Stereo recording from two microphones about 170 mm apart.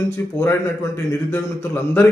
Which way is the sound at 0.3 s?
15° left (ahead or behind).